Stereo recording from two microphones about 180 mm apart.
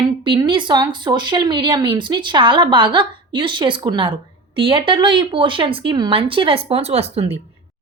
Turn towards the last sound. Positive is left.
turn(degrees=-35)  # may be behind; listen again after turning